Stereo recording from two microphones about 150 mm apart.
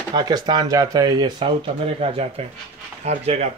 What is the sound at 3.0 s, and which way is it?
Speech, 45° right (ahead or behind).